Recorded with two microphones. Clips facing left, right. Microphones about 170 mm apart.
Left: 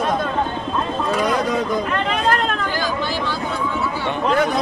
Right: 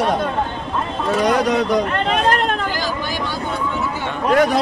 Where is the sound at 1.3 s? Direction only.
75° right (ahead or behind).